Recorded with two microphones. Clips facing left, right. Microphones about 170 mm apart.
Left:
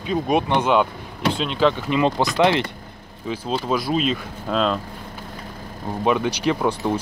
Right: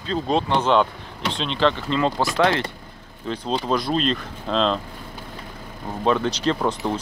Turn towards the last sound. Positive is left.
turn(degrees=10)  # may be behind; listen again after turning